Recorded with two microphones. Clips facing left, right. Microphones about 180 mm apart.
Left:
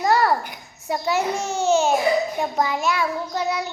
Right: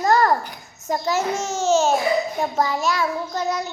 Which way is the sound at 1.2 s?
15° left (ahead or behind).